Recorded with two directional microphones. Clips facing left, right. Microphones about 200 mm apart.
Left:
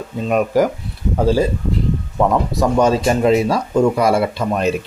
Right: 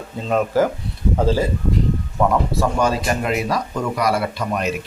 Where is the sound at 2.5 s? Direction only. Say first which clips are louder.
Left 4 dB; 20° left (ahead or behind).